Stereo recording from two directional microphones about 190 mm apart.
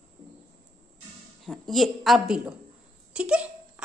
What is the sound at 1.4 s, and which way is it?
Speech, centre (ahead or behind).